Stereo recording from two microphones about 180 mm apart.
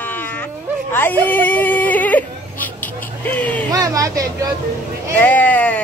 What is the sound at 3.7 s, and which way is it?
Speech, 20° right (ahead or behind).